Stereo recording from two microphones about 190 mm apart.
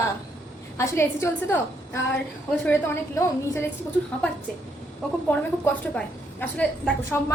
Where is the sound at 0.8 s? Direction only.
10° left (ahead or behind).